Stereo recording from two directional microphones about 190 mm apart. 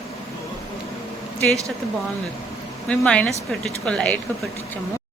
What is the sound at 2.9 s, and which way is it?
A woman's voice, 5° left (ahead or behind).